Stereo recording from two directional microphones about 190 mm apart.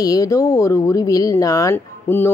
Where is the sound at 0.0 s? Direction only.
20° left (ahead or behind).